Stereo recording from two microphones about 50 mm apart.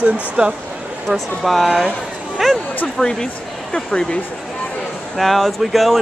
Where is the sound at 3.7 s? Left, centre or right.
Left.